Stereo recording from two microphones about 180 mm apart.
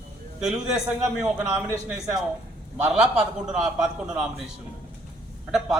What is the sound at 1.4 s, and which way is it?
A man's voice, 5° right (ahead or behind).